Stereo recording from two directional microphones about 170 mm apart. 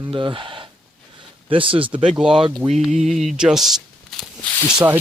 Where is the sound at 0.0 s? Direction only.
30° right (ahead or behind).